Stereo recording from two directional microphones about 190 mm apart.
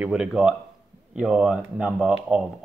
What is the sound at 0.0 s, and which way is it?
Speech, 5° right (ahead or behind).